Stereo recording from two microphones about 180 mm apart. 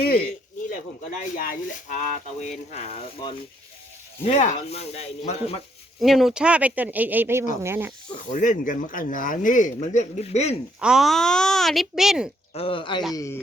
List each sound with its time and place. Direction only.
0.0 s speech: 55° left (ahead or behind); by 5.5 s 35° left (ahead or behind)
6.0 s speech: centre (ahead or behind)
8.3 s a man's voice: 45° left (ahead or behind)
10.8 s speech: 5° right (ahead or behind)
12.5 s speech: 30° left (ahead or behind)
13.1 s speech: 15° left (ahead or behind)